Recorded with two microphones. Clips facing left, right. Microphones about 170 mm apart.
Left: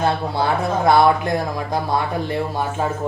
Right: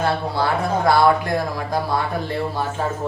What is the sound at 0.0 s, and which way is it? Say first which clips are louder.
Speech: left 1 dB; 20° left (ahead or behind).